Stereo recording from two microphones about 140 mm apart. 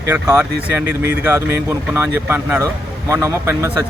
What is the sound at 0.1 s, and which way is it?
Speech, 15° right (ahead or behind).